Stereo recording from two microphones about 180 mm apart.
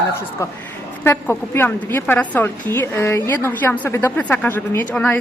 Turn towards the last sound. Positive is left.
turn(degrees=10)  # may be behind; listen again after turning